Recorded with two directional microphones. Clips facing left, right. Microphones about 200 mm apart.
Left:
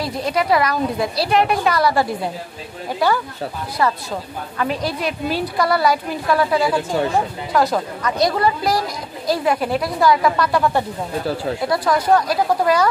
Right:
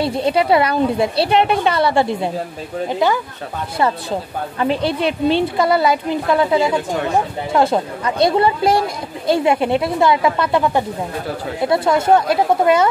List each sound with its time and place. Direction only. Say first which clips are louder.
0.0 s a woman's voice: right 4 dB; 30° right (ahead or behind)